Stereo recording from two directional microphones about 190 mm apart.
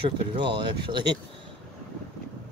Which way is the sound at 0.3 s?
25° right (ahead or behind).